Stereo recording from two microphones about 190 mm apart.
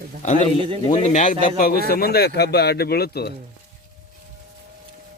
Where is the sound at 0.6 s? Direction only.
30° right (ahead or behind).